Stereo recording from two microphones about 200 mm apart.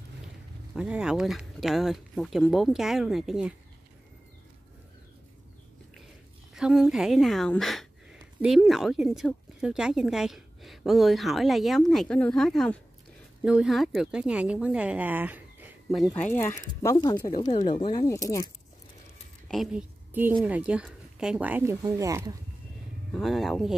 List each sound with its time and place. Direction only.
0.7 s speech: 5° right (ahead or behind)
6.5 s a woman's voice: 5° right (ahead or behind)
16.2 s speech: 10° left (ahead or behind)
19.4 s a woman's voice: centre (ahead or behind); by 22.3 s 15° right (ahead or behind)
23.1 s speech: centre (ahead or behind)